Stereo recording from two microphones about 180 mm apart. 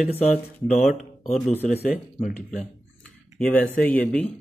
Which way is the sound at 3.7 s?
10° left (ahead or behind).